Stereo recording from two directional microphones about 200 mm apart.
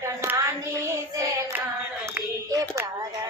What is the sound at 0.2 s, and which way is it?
Child singing, 15° right (ahead or behind).